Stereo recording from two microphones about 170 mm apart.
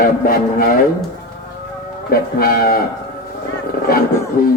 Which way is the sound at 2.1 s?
60° left (ahead or behind).